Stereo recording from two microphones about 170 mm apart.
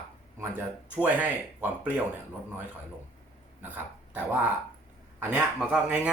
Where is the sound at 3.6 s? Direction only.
10° right (ahead or behind).